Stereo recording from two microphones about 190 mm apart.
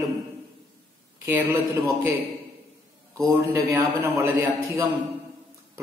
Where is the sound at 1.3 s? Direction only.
10° right (ahead or behind).